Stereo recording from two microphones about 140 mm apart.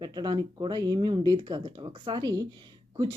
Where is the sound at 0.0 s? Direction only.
30° right (ahead or behind).